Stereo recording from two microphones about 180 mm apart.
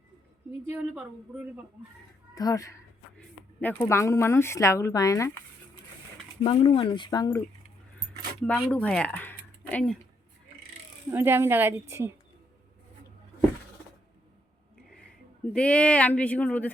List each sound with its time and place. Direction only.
0.7 s a woman's voice: 10° right (ahead or behind)
2.3 s speech: 20° left (ahead or behind)
6.4 s speech: 25° left (ahead or behind)
8.4 s speech: 5° left (ahead or behind)
11.1 s a woman's voice: 10° right (ahead or behind)
15.5 s speech: 5° left (ahead or behind)